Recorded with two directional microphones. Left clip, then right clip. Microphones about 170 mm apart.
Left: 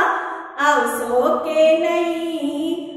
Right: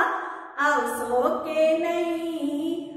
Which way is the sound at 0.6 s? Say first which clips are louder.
Left 6 dB; 5° right (ahead or behind).